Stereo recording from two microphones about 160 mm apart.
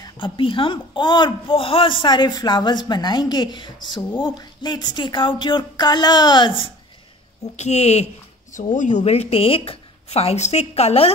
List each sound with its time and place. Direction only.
0.0 s a man's voice: 30° left (ahead or behind)
7.5 s a woman's voice: 45° left (ahead or behind)